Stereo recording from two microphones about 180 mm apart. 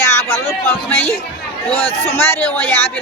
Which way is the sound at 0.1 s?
15° left (ahead or behind).